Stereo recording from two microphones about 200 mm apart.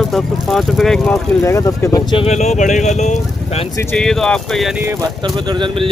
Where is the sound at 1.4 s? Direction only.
15° left (ahead or behind); by 3.6 s 35° left (ahead or behind).